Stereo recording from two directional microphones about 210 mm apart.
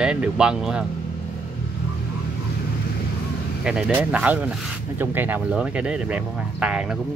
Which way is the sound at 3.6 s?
5° right (ahead or behind).